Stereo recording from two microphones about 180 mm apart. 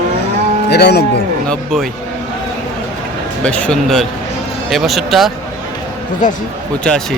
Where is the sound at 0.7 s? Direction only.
65° left (ahead or behind).